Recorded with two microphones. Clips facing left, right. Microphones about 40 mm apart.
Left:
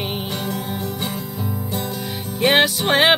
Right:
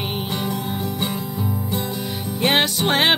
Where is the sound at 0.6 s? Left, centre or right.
Centre.